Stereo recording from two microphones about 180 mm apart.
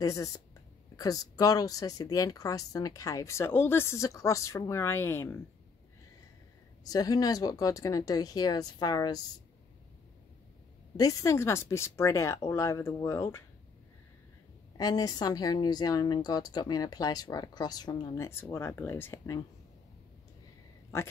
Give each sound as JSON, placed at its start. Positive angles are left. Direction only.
{"t": 0.0, "sound": "a woman's voice", "side_deg": 20}
{"t": 6.8, "sound": "a woman's voice", "side_deg": 20}
{"t": 11.0, "sound": "speech", "side_deg": 20}
{"t": 14.8, "sound": "a woman's voice", "side_deg": 20}